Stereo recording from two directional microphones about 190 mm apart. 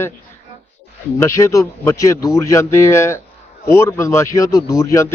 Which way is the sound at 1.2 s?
15° left (ahead or behind).